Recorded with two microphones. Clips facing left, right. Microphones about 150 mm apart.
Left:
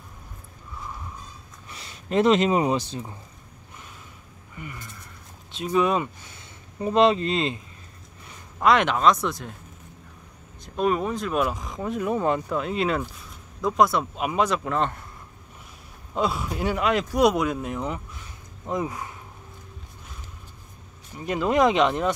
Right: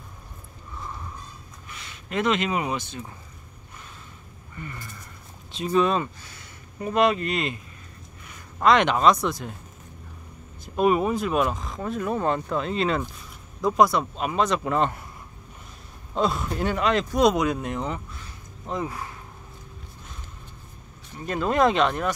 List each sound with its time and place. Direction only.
1.7 s speech: 35° left (ahead or behind)
4.6 s speech: 10° left (ahead or behind)
5.9 s speech: 15° left (ahead or behind)
8.5 s speech: 5° left (ahead or behind)
10.6 s speech: 10° right (ahead or behind)
11.4 s speech: 15° left (ahead or behind)
14.6 s speech: 5° right (ahead or behind)
16.2 s speech: 10° left (ahead or behind)
18.1 s a sound: 15° left (ahead or behind)
21.3 s speech: 15° left (ahead or behind)